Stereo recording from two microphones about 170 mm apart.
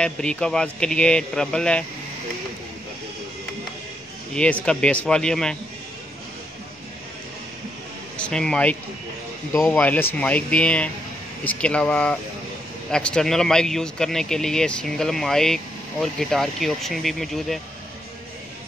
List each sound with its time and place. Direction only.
0.0 s speech: 5° left (ahead or behind)
4.3 s speech: 5° left (ahead or behind)
8.2 s speech: 5° left (ahead or behind)
9.5 s speech: 20° left (ahead or behind)
9.8 s speech: 10° left (ahead or behind)